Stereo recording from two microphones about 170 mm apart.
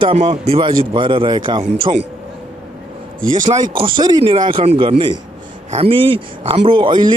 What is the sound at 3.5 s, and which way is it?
Speech, 30° right (ahead or behind).